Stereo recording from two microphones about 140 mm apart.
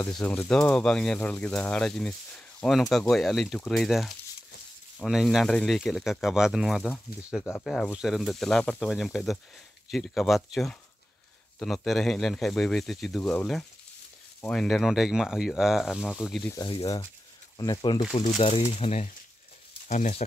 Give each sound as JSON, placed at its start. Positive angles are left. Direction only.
{"t": 0.0, "sound": "speech", "side_deg": 10}
{"t": 16.5, "sound": "speech", "side_deg": 35}
{"t": 18.4, "sound": "speech", "side_deg": 45}